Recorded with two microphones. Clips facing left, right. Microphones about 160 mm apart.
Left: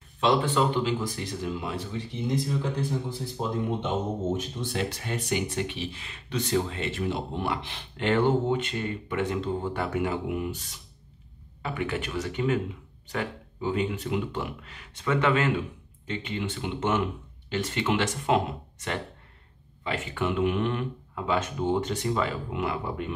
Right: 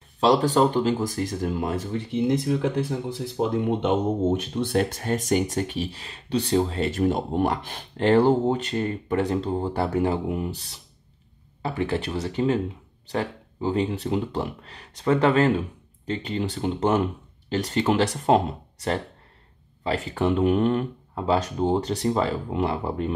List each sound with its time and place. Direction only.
0.2 s speech: 40° right (ahead or behind)